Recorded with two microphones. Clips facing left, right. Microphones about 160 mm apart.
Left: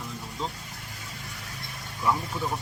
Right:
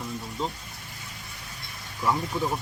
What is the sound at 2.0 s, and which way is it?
Speech, 5° right (ahead or behind).